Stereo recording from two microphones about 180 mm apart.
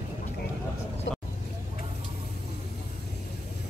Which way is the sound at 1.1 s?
75° left (ahead or behind).